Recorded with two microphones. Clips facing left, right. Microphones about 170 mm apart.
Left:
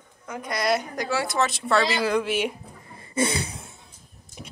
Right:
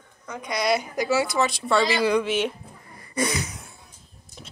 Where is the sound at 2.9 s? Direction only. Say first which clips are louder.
Left 1 dB; 25° left (ahead or behind).